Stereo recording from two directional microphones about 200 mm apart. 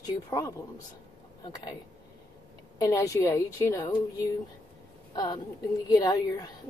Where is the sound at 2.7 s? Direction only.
15° left (ahead or behind).